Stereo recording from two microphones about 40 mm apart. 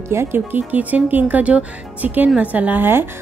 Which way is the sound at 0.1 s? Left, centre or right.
Right.